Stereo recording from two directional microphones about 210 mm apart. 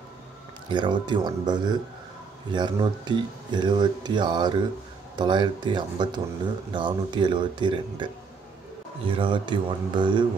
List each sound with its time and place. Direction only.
0.7 s speech: 20° right (ahead or behind)
9.1 s speech: 25° right (ahead or behind)